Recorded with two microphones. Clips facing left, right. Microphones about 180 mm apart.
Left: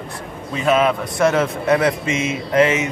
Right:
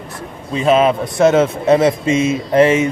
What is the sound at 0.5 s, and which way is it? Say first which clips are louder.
A man's voice: right 4 dB; 25° right (ahead or behind).